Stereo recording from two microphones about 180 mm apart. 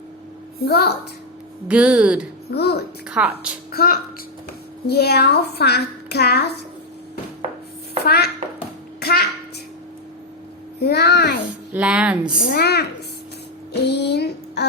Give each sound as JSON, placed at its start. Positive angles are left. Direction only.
{"t": 0.6, "sound": "a child's voice", "side_deg": 65}
{"t": 1.6, "sound": "speech", "side_deg": -5}
{"t": 2.5, "sound": "a child's voice", "side_deg": 60}
{"t": 3.1, "sound": "speech", "side_deg": -5}
{"t": 3.7, "sound": "a woman's voice", "side_deg": 60}
{"t": 8.0, "sound": "a child's voice", "side_deg": 60}
{"t": 9.0, "sound": "a sound", "side_deg": 60}
{"t": 10.8, "sound": "a child's voice", "side_deg": 65}
{"t": 11.7, "sound": "speech", "side_deg": -5}
{"t": 12.5, "sound": "a child's voice", "side_deg": 65}